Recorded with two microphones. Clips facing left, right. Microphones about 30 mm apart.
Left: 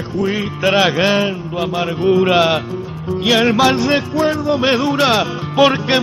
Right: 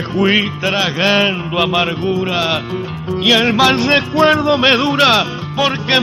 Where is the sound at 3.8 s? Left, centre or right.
Right.